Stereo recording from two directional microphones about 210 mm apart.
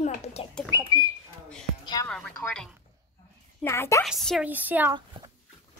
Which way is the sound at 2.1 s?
5° left (ahead or behind).